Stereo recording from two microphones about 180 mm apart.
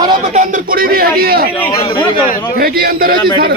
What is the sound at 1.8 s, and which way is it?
Speech, 30° left (ahead or behind).